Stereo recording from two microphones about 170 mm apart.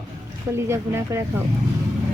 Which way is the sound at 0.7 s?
15° right (ahead or behind).